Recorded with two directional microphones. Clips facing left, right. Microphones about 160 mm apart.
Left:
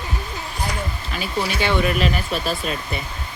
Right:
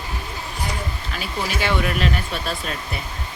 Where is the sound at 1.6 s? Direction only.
Centre (ahead or behind).